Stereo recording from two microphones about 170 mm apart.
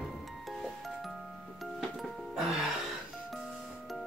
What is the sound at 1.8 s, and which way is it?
Music, centre (ahead or behind).